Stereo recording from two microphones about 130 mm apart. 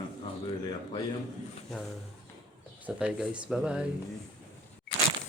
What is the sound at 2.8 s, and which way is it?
Speech, 5° right (ahead or behind).